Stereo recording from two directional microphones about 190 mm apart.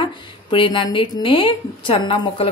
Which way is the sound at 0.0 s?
25° left (ahead or behind).